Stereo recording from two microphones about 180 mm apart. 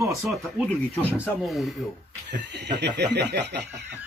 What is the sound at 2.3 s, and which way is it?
Snicker, 70° right (ahead or behind).